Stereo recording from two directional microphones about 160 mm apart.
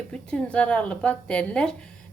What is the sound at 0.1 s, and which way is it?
Speech, 5° left (ahead or behind).